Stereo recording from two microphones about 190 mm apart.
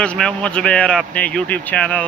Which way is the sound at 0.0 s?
5° left (ahead or behind).